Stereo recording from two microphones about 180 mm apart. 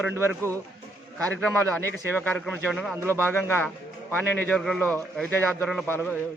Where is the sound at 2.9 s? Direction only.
15° right (ahead or behind).